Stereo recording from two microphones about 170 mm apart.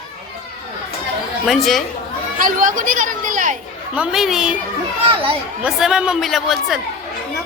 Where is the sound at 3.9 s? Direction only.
5° right (ahead or behind).